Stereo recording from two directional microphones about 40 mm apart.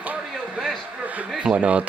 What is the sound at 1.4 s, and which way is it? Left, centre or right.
Speech, right.